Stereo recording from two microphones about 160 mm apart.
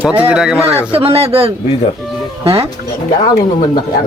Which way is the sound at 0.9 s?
35° right (ahead or behind).